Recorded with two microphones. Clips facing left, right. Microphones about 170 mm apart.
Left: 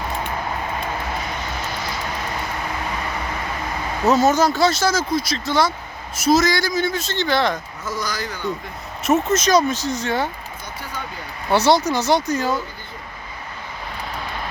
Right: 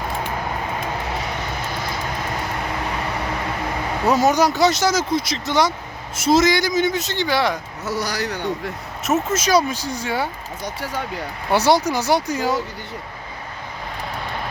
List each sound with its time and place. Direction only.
4.0 s a man's voice: 15° right (ahead or behind)
7.9 s a man's voice: 70° right (ahead or behind)
9.0 s speech: 5° right (ahead or behind)
11.5 s speech: 15° right (ahead or behind)